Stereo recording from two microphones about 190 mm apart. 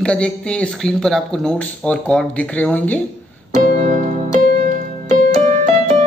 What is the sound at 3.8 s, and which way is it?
Music, 40° right (ahead or behind).